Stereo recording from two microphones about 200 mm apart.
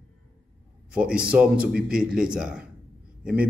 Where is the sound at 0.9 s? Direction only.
5° right (ahead or behind).